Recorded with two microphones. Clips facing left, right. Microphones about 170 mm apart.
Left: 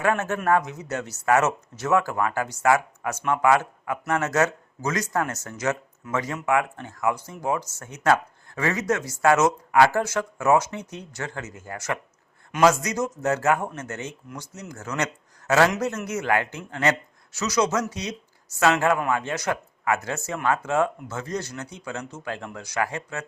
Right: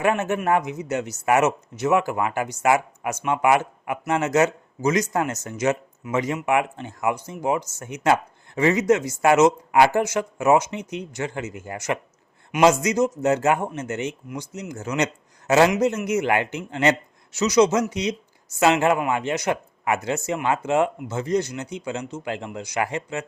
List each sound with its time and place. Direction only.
0.0 s a man's voice: 15° right (ahead or behind)